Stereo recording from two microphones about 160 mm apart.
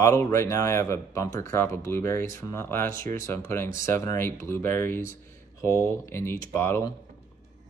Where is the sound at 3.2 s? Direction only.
15° left (ahead or behind).